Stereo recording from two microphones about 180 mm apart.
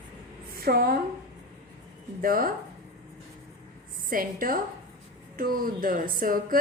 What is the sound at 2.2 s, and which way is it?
Speech, 55° right (ahead or behind).